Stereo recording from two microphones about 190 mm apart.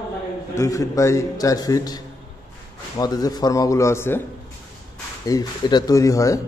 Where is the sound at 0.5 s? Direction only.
15° left (ahead or behind).